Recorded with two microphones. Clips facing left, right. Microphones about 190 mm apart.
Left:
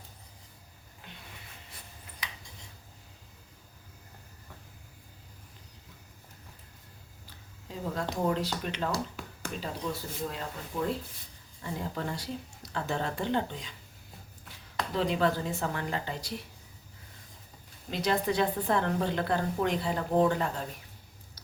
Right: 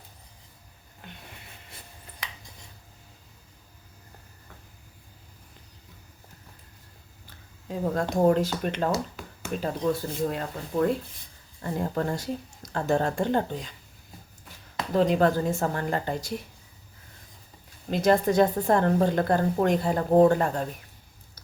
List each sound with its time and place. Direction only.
2.2 s a sound: 50° right (ahead or behind)
7.7 s a woman's voice: 50° right (ahead or behind)
14.9 s a woman's voice: 45° right (ahead or behind)
17.9 s a woman's voice: 45° right (ahead or behind)